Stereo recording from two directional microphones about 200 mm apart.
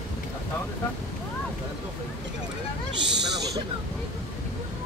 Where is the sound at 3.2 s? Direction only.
55° right (ahead or behind).